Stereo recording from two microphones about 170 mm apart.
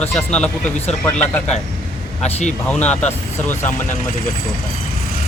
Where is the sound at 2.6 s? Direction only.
10° left (ahead or behind).